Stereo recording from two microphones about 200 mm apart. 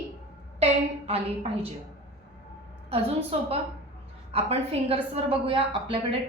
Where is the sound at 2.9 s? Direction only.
30° right (ahead or behind).